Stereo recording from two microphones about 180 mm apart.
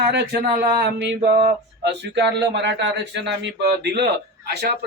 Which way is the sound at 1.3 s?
55° right (ahead or behind).